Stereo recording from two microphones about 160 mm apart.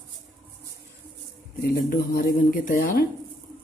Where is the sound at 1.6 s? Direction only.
80° left; by 3.1 s 60° left (ahead or behind).